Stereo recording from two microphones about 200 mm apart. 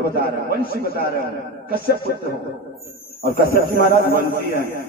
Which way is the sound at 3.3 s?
50° right (ahead or behind).